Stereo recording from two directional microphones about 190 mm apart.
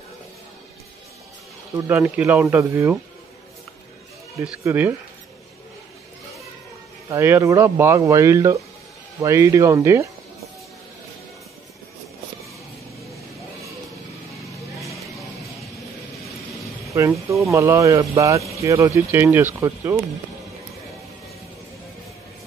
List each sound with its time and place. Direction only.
1.9 s speech: 10° right (ahead or behind)
4.4 s speech: 10° right (ahead or behind)
7.1 s speech: 10° right (ahead or behind)
16.9 s speech: 15° right (ahead or behind)